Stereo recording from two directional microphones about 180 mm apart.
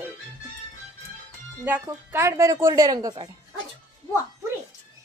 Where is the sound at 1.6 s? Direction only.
10° right (ahead or behind).